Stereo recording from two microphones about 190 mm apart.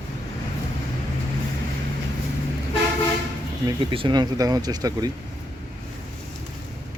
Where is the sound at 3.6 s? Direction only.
25° right (ahead or behind).